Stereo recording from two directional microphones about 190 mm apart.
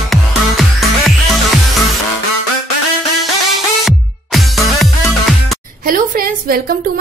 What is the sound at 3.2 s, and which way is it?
Music, centre (ahead or behind).